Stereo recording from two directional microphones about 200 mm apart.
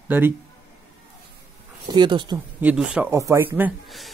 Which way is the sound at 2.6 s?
5° right (ahead or behind).